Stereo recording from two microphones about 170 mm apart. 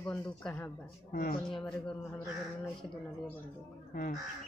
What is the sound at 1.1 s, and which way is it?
Speech, 45° left (ahead or behind).